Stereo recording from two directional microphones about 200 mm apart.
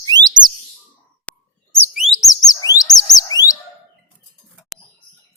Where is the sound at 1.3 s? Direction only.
5° left (ahead or behind).